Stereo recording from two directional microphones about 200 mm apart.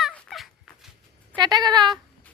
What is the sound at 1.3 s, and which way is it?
Cat, 20° right (ahead or behind).